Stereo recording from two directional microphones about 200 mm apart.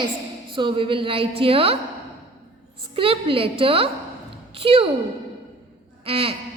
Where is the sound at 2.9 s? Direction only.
25° right (ahead or behind).